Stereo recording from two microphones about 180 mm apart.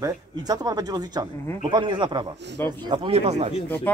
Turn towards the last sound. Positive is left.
turn(degrees=-35)  # may be behind; listen again after turning